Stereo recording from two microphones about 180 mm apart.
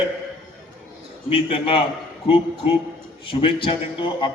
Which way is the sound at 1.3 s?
30° left (ahead or behind).